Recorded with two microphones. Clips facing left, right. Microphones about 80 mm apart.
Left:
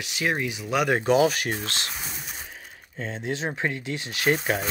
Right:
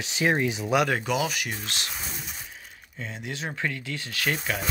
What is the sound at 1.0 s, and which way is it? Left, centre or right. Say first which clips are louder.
Speech: left 7 dB; left.